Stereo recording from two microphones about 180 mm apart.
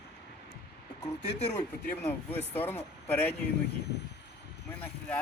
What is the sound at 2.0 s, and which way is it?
Speech, 10° left (ahead or behind).